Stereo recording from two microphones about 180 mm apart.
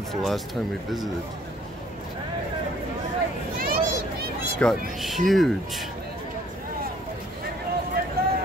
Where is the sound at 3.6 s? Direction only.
55° right (ahead or behind).